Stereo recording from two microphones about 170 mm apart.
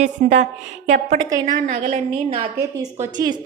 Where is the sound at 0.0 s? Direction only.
45° right (ahead or behind).